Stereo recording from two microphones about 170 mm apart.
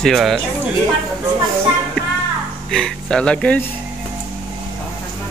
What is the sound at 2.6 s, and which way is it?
Speech, 5° left (ahead or behind).